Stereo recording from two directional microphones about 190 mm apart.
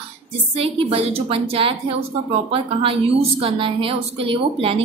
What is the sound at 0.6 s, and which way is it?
A woman's voice, 30° right (ahead or behind).